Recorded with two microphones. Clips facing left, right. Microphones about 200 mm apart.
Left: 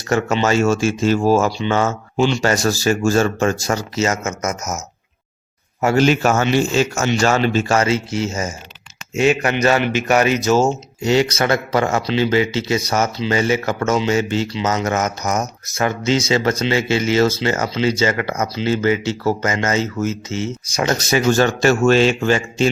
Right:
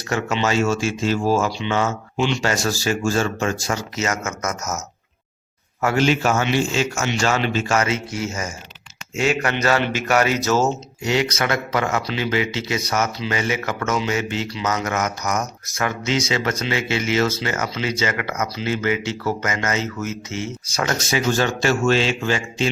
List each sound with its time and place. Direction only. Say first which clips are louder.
0.1 s speech: left 4 dB; 45° left (ahead or behind); by 4.8 s 20° left (ahead or behind)
6.0 s speech: left 3 dB; 45° left (ahead or behind); by 10.8 s 15° left (ahead or behind)
11.0 s speech: left 5 dB; 30° left (ahead or behind)
20.7 s speech: left 4 dB; 15° left (ahead or behind)
21.1 s speech: left 6 dB; 45° left (ahead or behind)